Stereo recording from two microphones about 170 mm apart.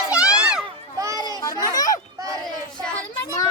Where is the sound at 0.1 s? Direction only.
5° right (ahead or behind).